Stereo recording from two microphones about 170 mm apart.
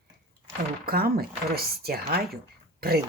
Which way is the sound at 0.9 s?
60° right (ahead or behind).